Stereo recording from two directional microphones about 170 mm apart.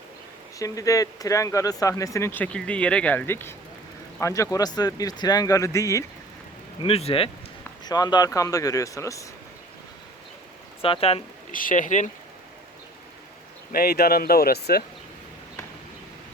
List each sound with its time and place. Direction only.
0.6 s speech: 20° left (ahead or behind)
6.8 s speech: 35° left (ahead or behind)
7.9 s speech: 25° left (ahead or behind)
10.8 s speech: 35° left (ahead or behind)
11.5 s speech: 50° left (ahead or behind)
13.7 s speech: 60° left (ahead or behind)